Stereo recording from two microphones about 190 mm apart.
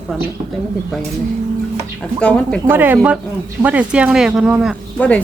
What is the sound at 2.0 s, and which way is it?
Speech, 5° left (ahead or behind).